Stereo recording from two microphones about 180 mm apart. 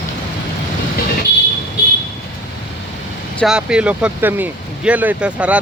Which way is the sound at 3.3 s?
5° right (ahead or behind).